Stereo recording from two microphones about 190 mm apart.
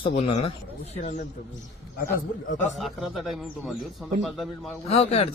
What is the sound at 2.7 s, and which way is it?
A man's voice, centre (ahead or behind).